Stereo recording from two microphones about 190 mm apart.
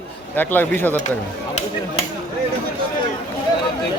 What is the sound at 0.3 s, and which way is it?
Speech, 10° left (ahead or behind).